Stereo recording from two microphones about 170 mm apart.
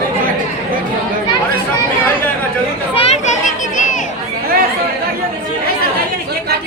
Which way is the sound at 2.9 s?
40° left (ahead or behind).